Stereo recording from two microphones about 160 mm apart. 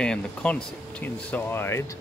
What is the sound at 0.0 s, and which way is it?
Speech, 5° left (ahead or behind).